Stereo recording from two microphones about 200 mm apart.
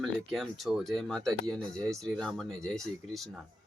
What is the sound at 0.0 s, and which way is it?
Speech, centre (ahead or behind).